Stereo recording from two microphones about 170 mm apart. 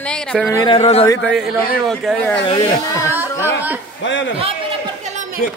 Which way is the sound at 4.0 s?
90° left.